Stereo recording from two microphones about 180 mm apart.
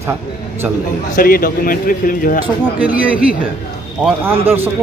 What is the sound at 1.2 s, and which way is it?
Speech, 55° left (ahead or behind).